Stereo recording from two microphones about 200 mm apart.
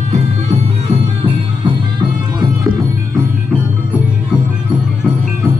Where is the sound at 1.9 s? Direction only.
20° right (ahead or behind).